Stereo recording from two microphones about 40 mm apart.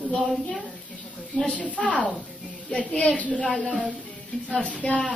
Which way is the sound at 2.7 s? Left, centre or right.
Left.